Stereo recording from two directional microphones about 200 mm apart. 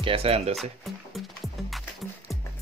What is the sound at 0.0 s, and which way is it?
Speech, 30° right (ahead or behind).